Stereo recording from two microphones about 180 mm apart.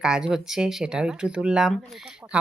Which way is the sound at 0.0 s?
5° right (ahead or behind).